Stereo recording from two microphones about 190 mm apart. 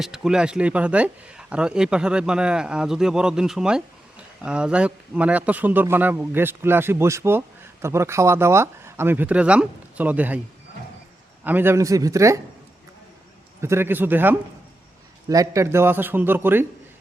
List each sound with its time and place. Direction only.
0.0 s speech: 5° right (ahead or behind)
11.4 s speech: 10° right (ahead or behind)
13.6 s speech: 15° right (ahead or behind)